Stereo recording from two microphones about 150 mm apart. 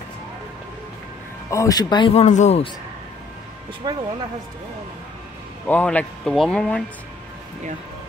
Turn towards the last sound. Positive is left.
turn(degrees=5)  # may be behind; listen again after turning